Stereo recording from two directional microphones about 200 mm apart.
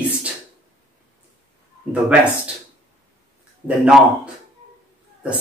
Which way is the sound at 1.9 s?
5° right (ahead or behind).